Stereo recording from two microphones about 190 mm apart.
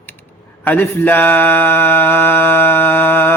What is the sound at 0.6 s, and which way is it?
Mantra, 10° left (ahead or behind).